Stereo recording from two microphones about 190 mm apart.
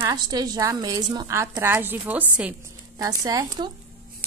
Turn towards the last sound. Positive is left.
turn(degrees=-20)  # may be behind; listen again after turning